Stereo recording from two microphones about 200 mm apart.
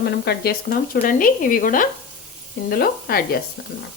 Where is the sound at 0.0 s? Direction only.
55° left (ahead or behind).